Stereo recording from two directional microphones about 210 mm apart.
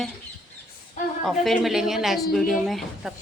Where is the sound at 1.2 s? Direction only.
Centre (ahead or behind).